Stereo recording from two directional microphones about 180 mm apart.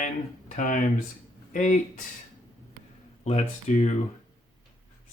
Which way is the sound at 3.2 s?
35° left (ahead or behind).